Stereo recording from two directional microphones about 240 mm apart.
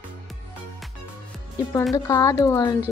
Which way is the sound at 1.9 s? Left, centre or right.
Centre.